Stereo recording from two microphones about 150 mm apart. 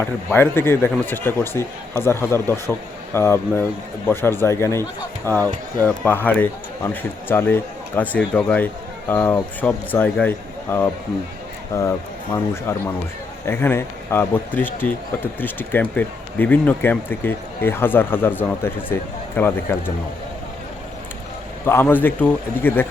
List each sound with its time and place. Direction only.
0.0 s speech: 15° left (ahead or behind)
5.4 s speech: 25° right (ahead or behind)
5.8 s speech: 10° left (ahead or behind)
13.5 s speech: 15° left (ahead or behind)
21.6 s speech: 15° left (ahead or behind)